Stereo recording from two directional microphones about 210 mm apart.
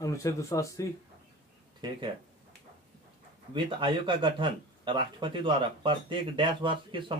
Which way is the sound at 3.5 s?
25° right (ahead or behind).